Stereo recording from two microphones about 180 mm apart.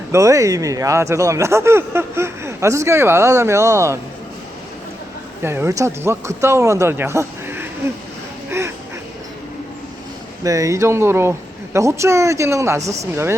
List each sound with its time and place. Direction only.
0.1 s speech: 15° right (ahead or behind)
5.4 s speech: 15° right (ahead or behind)
8.4 s a sound: 15° right (ahead or behind)
10.4 s speech: 20° right (ahead or behind)
12.8 s speech: 40° right (ahead or behind)